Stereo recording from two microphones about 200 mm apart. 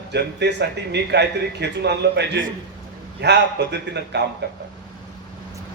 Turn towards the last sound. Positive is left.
turn(degrees=-60)  # may be behind; listen again after turning